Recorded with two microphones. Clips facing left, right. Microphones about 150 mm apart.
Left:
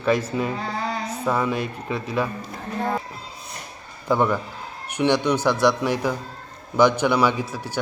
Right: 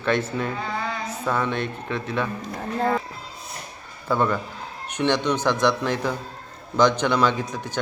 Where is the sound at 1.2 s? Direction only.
5° left (ahead or behind).